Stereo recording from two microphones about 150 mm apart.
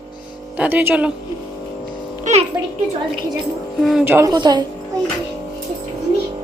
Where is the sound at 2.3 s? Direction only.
55° right (ahead or behind).